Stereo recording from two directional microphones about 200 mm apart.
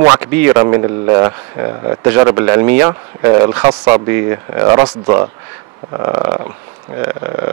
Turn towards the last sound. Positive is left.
turn(degrees=-15)  # may be behind; listen again after turning